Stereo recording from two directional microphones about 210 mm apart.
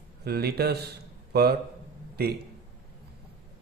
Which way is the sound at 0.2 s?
50° right (ahead or behind).